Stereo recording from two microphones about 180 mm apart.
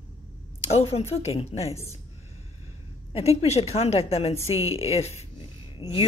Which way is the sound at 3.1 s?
35° left (ahead or behind).